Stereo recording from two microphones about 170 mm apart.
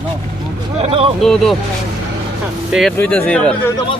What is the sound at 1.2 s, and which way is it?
Speech, centre (ahead or behind).